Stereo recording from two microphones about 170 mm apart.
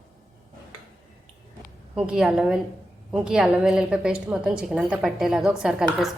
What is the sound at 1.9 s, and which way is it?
A woman's voice, 5° right (ahead or behind).